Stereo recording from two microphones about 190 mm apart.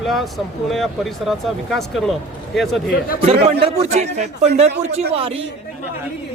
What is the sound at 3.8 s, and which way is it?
A man's voice, 35° right (ahead or behind).